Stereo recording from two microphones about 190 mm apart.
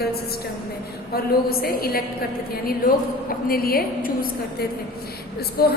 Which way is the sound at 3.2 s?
50° left (ahead or behind).